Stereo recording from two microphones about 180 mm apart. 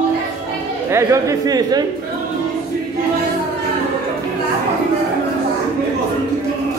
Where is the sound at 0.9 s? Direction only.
15° right (ahead or behind).